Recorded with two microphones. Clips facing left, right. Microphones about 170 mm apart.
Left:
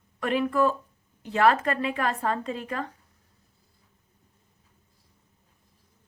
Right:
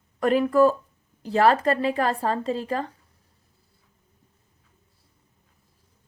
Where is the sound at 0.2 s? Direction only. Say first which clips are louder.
Right 6 dB; 40° right (ahead or behind).